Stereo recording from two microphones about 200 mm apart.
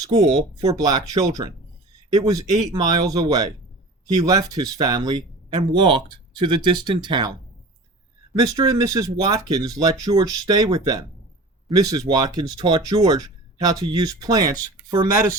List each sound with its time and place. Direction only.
0.0 s speech: 25° right (ahead or behind)
8.4 s speech: 20° right (ahead or behind)